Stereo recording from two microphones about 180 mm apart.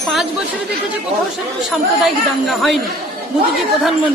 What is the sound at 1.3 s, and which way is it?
Speech, centre (ahead or behind).